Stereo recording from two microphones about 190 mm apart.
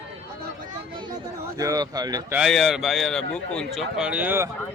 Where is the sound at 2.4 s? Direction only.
Centre (ahead or behind).